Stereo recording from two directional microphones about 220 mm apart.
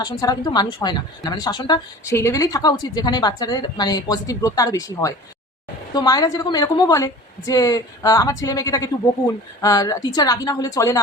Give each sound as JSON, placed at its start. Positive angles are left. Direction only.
{"t": 0.0, "sound": "a woman's voice", "side_deg": 20}